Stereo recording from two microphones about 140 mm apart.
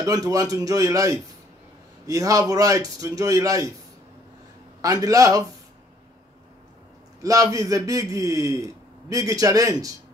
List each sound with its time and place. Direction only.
0.0 s a man's voice: 25° right (ahead or behind)
4.8 s a man's voice: 25° right (ahead or behind)
7.2 s a man's voice: 25° right (ahead or behind)